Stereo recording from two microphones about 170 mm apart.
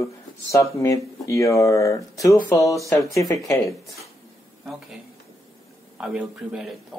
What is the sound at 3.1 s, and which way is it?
Speech, 20° left (ahead or behind).